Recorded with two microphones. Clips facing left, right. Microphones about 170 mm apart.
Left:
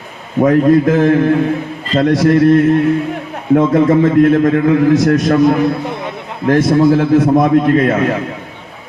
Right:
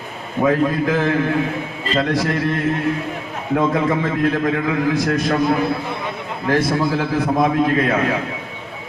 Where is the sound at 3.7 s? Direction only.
45° left (ahead or behind).